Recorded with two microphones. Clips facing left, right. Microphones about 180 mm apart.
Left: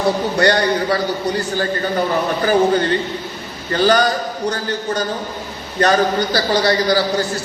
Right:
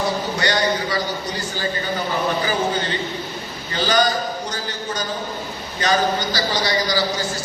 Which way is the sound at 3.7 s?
60° left (ahead or behind).